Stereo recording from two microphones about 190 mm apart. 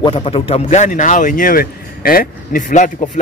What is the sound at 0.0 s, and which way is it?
Speech, 30° left (ahead or behind).